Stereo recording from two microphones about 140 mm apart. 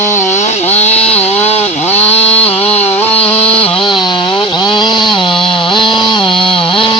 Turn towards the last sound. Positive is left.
turn(degrees=40)  # may be behind; listen again after turning